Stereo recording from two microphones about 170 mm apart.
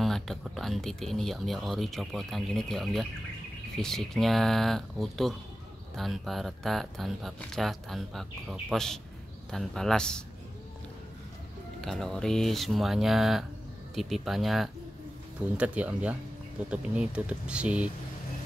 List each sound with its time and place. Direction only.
0.0 s speech: centre (ahead or behind)
11.8 s speech: centre (ahead or behind)